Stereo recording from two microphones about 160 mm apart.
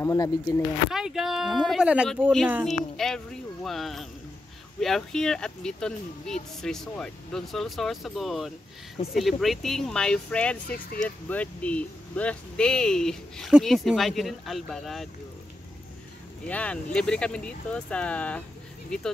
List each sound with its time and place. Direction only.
0.0 s speech: 20° left (ahead or behind)
0.8 s speech: 5° right (ahead or behind)
16.4 s speech: 10° left (ahead or behind)